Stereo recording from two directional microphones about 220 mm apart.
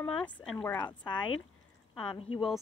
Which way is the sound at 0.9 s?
20° left (ahead or behind).